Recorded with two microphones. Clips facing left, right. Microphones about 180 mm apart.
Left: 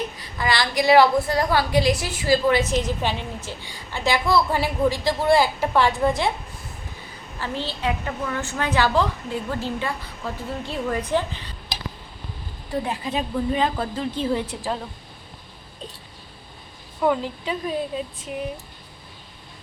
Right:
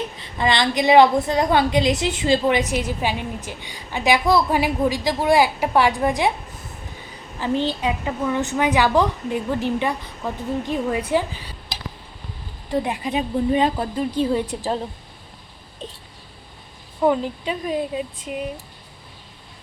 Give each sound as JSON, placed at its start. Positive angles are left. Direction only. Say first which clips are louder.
{"t": 0.2, "sound": "a woman's voice", "louder": "right 5 dB", "side_deg": -25}
{"t": 7.3, "sound": "a woman's voice", "louder": "right 7 dB", "side_deg": -15}
{"t": 12.8, "sound": "a woman's voice", "louder": "right 2 dB", "side_deg": -15}
{"t": 13.7, "sound": "a woman's voice", "louder": "right 4 dB", "side_deg": -15}
{"t": 17.0, "sound": "a woman's voice", "louder": "right 3 dB", "side_deg": -20}